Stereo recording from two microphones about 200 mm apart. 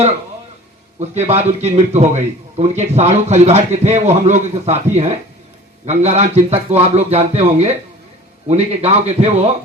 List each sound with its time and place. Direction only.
0.9 s a man's voice: 35° right (ahead or behind)